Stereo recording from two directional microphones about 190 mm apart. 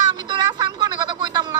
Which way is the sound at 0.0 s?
20° right (ahead or behind).